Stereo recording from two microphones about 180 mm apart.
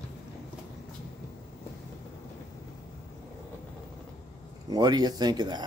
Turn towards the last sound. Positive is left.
turn(degrees=-25)  # may be behind; listen again after turning